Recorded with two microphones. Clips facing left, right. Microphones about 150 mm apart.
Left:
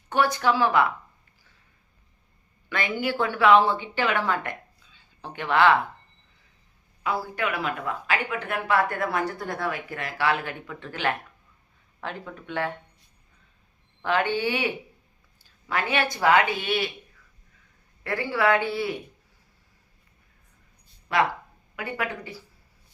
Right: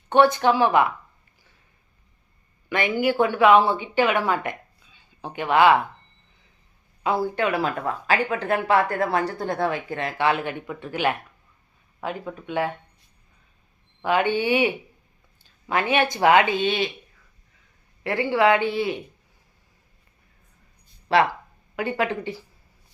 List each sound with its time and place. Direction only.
0.1 s speech: 25° right (ahead or behind)
2.6 s speech: 20° right (ahead or behind)
7.0 s speech: 25° right (ahead or behind)
14.0 s speech: 15° right (ahead or behind)
15.7 s speech: 20° right (ahead or behind)
18.0 s speech: 20° right (ahead or behind)
21.1 s speech: 30° right (ahead or behind)